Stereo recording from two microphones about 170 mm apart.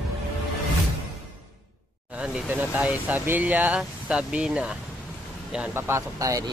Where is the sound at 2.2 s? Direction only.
10° right (ahead or behind).